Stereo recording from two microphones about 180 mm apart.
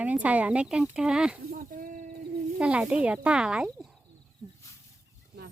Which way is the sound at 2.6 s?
5° right (ahead or behind).